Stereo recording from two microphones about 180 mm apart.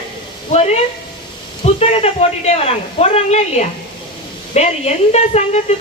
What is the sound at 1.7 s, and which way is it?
A woman's voice, 35° left (ahead or behind).